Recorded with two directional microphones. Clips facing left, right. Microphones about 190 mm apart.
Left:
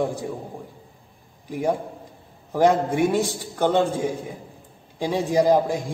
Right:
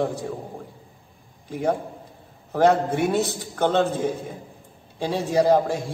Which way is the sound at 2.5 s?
15° left (ahead or behind).